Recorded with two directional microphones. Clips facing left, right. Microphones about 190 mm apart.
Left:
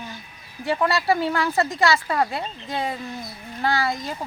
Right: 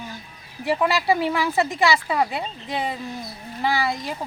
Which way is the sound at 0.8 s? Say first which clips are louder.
Even; 5° right (ahead or behind).